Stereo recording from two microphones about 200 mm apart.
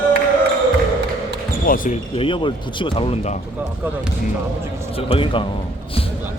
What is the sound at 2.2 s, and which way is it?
Speech, 25° left (ahead or behind).